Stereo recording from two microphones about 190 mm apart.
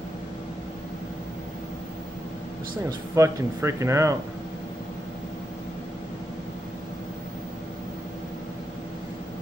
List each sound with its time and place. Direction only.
3.2 s speech: 15° right (ahead or behind)